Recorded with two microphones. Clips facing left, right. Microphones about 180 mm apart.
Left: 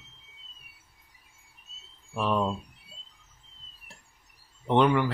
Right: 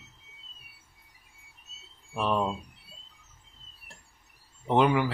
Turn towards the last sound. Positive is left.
turn(degrees=-5)  # may be behind; listen again after turning